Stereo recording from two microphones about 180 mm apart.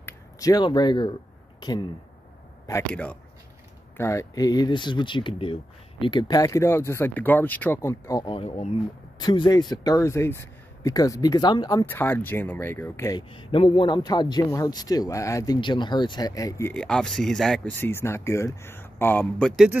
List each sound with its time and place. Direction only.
0.0 s speech: 20° left (ahead or behind)
2.9 s speech: 5° left (ahead or behind)
8.3 s speech: 35° left (ahead or behind)
9.2 s speech: 25° left (ahead or behind)
11.9 s speech: 10° left (ahead or behind)
13.3 s speech: 30° left (ahead or behind)
16.7 s speech: 5° left (ahead or behind)